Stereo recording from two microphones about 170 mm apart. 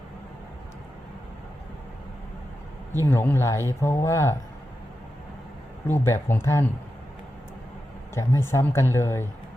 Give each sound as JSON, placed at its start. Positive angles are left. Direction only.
{"t": 2.9, "sound": "speech", "side_deg": 15}
{"t": 5.9, "sound": "speech", "side_deg": 15}
{"t": 8.1, "sound": "speech", "side_deg": 15}